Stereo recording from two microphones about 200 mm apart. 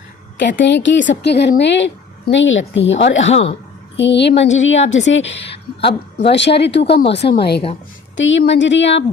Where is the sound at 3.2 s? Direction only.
30° left (ahead or behind).